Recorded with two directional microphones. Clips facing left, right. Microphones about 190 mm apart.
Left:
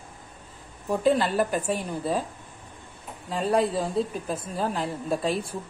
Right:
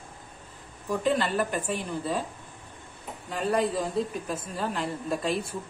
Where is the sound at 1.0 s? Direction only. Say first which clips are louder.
Left 4 dB; 40° left (ahead or behind).